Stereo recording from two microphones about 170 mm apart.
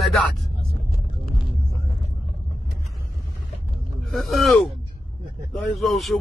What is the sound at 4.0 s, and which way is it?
Speech, centre (ahead or behind).